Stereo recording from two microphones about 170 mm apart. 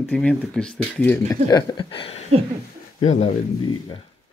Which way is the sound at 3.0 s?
45° left (ahead or behind).